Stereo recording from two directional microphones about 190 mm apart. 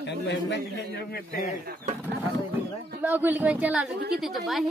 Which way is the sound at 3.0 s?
10° right (ahead or behind).